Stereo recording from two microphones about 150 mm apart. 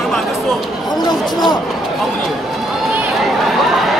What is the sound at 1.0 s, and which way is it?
Speech, 30° left (ahead or behind).